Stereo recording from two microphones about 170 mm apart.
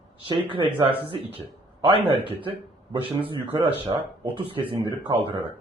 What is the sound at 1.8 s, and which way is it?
Speech, 30° right (ahead or behind).